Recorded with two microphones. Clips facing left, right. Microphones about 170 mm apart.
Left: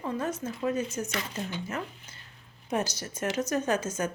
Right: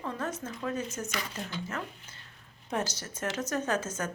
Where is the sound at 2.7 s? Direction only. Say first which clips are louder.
Left 3 dB; 10° left (ahead or behind).